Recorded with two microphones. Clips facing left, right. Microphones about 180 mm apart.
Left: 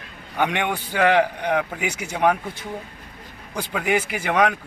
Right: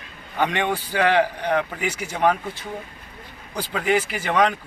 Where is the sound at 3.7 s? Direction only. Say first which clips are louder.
Right 1 dB; 10° left (ahead or behind).